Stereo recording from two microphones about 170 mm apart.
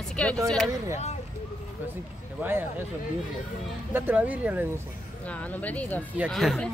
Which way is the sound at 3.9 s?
10° right (ahead or behind).